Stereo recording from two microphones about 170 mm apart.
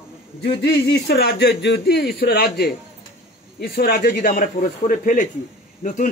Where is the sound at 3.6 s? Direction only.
60° left (ahead or behind).